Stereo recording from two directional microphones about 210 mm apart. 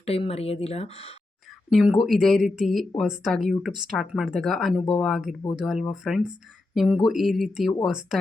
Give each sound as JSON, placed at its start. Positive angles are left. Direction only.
{"t": 0.0, "sound": "speech", "side_deg": 30}
{"t": 1.7, "sound": "speech", "side_deg": 0}